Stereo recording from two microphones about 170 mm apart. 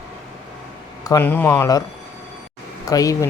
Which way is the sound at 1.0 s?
15° left (ahead or behind).